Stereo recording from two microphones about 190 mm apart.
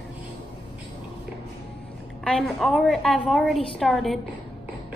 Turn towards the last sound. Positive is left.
turn(degrees=0)  # may be behind; listen again after turning